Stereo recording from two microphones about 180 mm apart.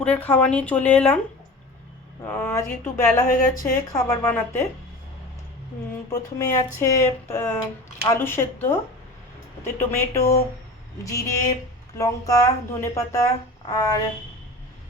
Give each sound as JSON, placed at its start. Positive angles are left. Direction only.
{"t": 0.0, "sound": "speech", "side_deg": 10}
{"t": 2.2, "sound": "speech", "side_deg": 10}
{"t": 3.2, "sound": "speech", "side_deg": 50}
{"t": 4.2, "sound": "speech", "side_deg": 15}
{"t": 6.1, "sound": "speech", "side_deg": 20}